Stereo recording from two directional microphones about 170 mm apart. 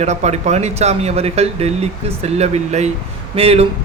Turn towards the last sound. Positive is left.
turn(degrees=-35)  # may be behind; listen again after turning